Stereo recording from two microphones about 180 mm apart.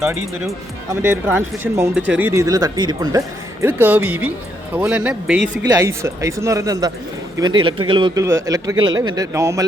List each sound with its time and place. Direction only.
1.0 s a man's voice: 10° right (ahead or behind)